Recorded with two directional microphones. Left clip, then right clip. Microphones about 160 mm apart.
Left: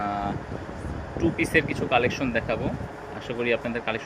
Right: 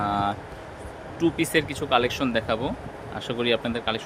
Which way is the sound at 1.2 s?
35° right (ahead or behind).